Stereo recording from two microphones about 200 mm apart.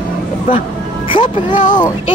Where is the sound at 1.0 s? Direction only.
25° left (ahead or behind).